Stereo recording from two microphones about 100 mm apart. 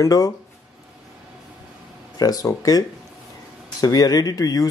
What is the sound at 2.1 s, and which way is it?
Speech, 40° left (ahead or behind).